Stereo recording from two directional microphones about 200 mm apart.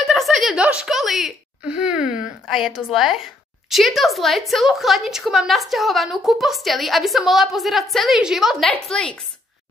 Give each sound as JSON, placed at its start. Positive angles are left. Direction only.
{"t": 0.0, "sound": "a woman's voice", "side_deg": 0}